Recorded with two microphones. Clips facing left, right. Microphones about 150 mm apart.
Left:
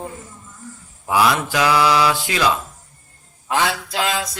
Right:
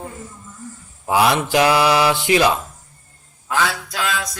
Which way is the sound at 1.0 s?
25° right (ahead or behind).